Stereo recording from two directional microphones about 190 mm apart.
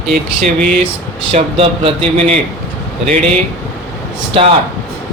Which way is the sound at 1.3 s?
30° right (ahead or behind).